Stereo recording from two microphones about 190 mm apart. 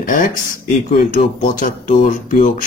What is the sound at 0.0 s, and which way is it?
Speech, 45° left (ahead or behind).